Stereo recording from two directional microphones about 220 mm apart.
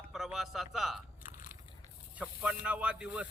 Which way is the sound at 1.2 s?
35° left (ahead or behind).